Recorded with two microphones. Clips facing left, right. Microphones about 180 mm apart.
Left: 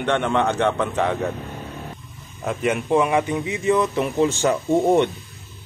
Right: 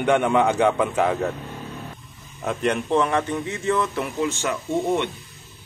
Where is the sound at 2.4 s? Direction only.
Centre (ahead or behind).